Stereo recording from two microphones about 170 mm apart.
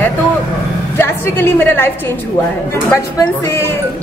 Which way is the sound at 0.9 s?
15° left (ahead or behind).